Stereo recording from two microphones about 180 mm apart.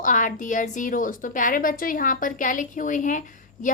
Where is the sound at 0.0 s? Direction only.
45° left (ahead or behind).